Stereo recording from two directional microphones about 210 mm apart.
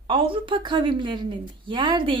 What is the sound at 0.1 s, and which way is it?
A woman's voice, 25° right (ahead or behind).